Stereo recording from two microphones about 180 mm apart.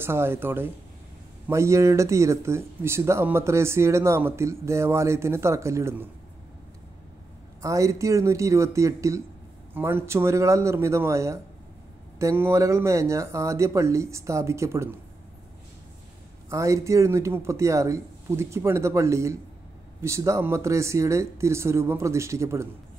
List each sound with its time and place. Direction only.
0.0 s speech: 15° right (ahead or behind)
7.6 s speech: 15° right (ahead or behind)
16.4 s speech: 15° right (ahead or behind)